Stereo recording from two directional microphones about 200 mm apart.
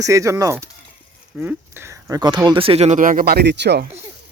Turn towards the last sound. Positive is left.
turn(degrees=-55)  # may be behind; listen again after turning